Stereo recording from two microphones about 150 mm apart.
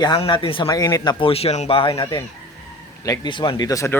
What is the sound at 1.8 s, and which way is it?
Speech, 35° left (ahead or behind).